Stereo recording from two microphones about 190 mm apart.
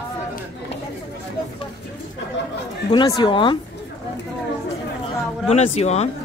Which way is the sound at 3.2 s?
25° left (ahead or behind).